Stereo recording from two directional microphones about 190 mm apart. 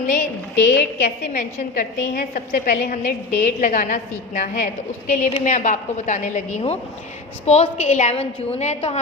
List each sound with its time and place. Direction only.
0.7 s a woman's voice: 55° left (ahead or behind); by 9.0 s 35° left (ahead or behind)